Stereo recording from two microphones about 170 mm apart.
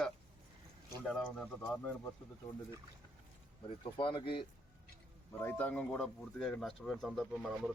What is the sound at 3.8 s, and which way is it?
Speech, 30° left (ahead or behind).